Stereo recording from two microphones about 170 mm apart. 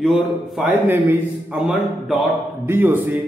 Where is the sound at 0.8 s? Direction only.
10° right (ahead or behind).